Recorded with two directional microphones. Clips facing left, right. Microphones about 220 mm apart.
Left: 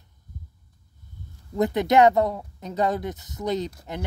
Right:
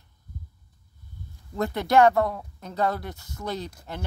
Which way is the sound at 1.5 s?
20° left (ahead or behind).